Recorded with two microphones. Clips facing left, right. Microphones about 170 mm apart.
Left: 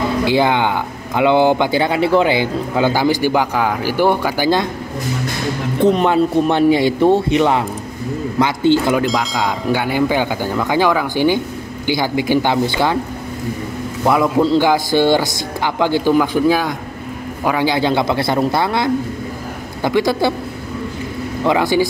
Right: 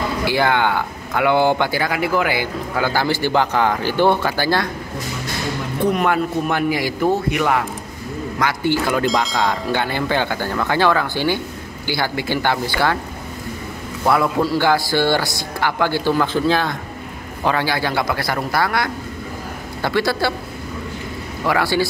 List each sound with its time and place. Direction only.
0.2 s speech: 20° left (ahead or behind)
5.8 s a man's voice: 25° left (ahead or behind)
9.0 s speech: centre (ahead or behind); by 13.0 s 20° left (ahead or behind)
14.0 s a man's voice: 15° left (ahead or behind)
21.5 s speech: 20° left (ahead or behind)